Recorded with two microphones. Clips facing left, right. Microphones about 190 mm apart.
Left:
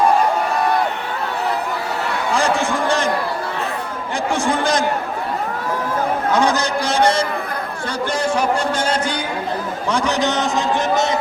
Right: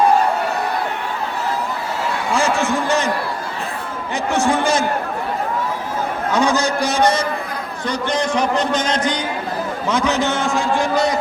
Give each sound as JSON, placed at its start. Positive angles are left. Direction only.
{"t": 6.3, "sound": "a man's voice", "side_deg": -10}
{"t": 8.3, "sound": "a man's voice", "side_deg": 10}